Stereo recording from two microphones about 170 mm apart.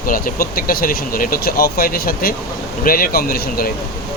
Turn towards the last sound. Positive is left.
turn(degrees=65)  # may be behind; listen again after turning